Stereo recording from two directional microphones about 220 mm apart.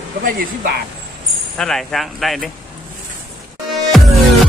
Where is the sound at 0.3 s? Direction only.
40° right (ahead or behind).